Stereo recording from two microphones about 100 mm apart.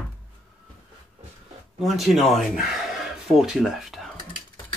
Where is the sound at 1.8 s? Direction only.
Centre (ahead or behind).